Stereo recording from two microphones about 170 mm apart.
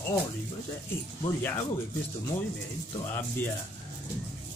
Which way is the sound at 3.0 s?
10° left (ahead or behind).